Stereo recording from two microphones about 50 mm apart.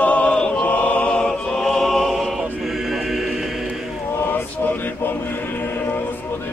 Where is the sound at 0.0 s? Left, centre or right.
Left.